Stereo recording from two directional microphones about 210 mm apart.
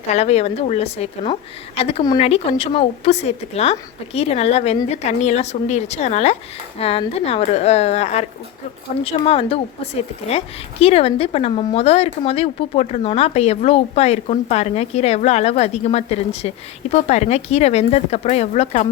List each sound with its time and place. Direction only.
0.1 s a woman's voice: 30° left (ahead or behind)